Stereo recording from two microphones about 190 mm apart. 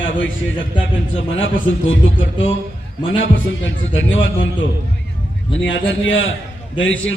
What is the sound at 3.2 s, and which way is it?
A man's voice, 85° left.